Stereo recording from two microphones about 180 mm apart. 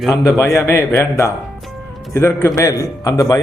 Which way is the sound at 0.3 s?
15° left (ahead or behind).